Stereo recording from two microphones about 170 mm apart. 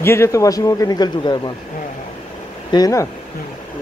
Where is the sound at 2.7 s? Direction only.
20° left (ahead or behind).